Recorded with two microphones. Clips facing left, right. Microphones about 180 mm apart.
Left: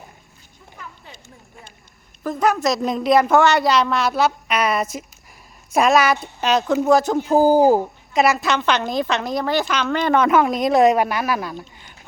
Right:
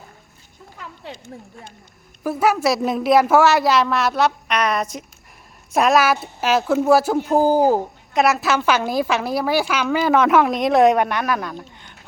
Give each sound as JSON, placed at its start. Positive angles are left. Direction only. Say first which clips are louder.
{"t": 1.1, "sound": "speech", "louder": "right 9 dB", "side_deg": -80}
{"t": 2.2, "sound": "a woman's voice", "louder": "right 1 dB", "side_deg": -10}
{"t": 8.1, "sound": "a woman's voice", "louder": "even", "side_deg": 0}